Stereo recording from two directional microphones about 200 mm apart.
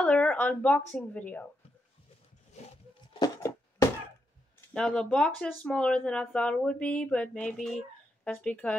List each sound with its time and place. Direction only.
0.0 s speech: 5° left (ahead or behind)
3.1 s a sound: 15° left (ahead or behind)
4.7 s speech: 5° left (ahead or behind)